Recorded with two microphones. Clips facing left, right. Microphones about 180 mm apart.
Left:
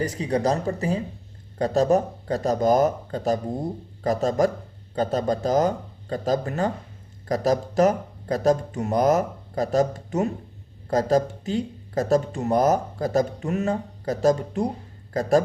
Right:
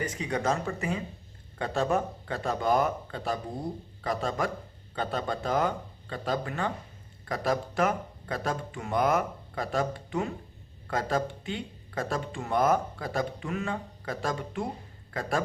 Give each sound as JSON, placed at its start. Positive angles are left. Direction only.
{"t": 0.0, "sound": "speech", "side_deg": 35}